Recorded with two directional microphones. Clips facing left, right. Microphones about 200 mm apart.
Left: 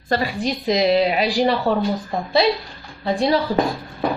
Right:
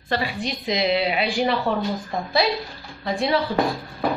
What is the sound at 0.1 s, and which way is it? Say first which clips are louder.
A woman's voice: left 4 dB; 40° left (ahead or behind).